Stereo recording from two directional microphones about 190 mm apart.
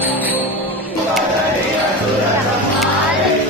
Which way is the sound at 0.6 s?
10° left (ahead or behind).